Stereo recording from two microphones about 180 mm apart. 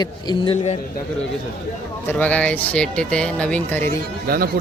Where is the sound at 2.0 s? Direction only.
10° left (ahead or behind).